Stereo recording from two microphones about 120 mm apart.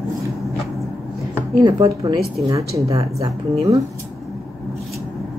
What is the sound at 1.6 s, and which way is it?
Speech, 30° right (ahead or behind).